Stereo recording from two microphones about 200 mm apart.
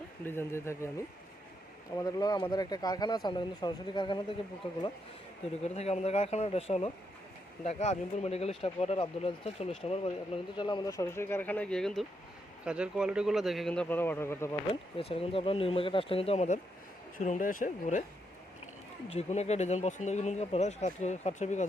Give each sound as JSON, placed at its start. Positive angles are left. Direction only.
{"t": 0.3, "sound": "speech", "side_deg": 10}
{"t": 2.0, "sound": "speech", "side_deg": 20}
{"t": 5.6, "sound": "a man's voice", "side_deg": 35}
{"t": 14.7, "sound": "speech", "side_deg": 25}
{"t": 19.0, "sound": "speech", "side_deg": 30}